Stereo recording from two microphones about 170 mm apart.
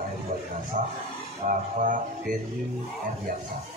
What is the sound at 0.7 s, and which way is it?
Speech, 50° right (ahead or behind).